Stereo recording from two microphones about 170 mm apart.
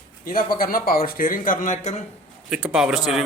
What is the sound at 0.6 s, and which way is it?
Speech, 60° left (ahead or behind).